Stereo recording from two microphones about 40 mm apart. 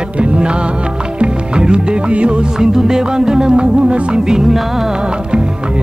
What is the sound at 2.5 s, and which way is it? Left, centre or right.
Music, centre.